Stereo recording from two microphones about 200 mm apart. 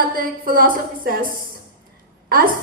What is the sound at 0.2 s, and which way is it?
A woman's voice, 45° right (ahead or behind).